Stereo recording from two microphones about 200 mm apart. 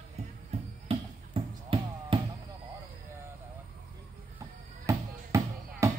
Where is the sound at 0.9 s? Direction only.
30° right (ahead or behind).